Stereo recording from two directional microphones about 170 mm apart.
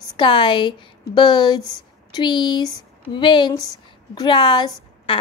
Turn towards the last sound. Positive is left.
turn(degrees=30)  # may be behind; listen again after turning